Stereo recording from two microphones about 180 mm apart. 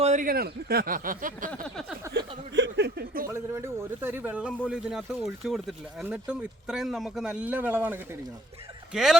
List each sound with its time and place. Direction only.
0.0 s speech: 45° right (ahead or behind)
1.5 s a sound: 5° left (ahead or behind)
2.1 s speech: 75° right (ahead or behind)
3.2 s a man's voice: 15° right (ahead or behind)